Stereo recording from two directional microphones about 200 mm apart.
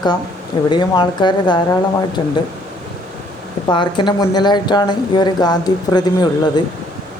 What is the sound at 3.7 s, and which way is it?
Speech, 25° left (ahead or behind).